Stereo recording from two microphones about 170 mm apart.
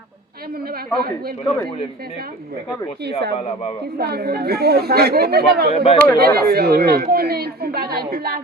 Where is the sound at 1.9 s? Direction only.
65° right (ahead or behind).